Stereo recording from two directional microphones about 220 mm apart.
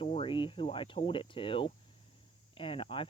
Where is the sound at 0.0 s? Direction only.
25° left (ahead or behind).